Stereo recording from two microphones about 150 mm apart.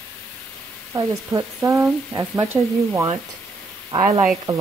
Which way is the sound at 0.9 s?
20° right (ahead or behind).